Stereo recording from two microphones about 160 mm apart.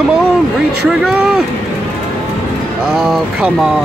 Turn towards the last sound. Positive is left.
turn(degrees=-5)  # may be behind; listen again after turning